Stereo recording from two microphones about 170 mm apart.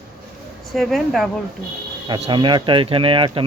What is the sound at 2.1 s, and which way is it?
Speech, 35° right (ahead or behind).